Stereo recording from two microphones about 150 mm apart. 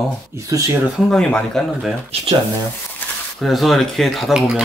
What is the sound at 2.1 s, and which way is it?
Speech, 40° right (ahead or behind).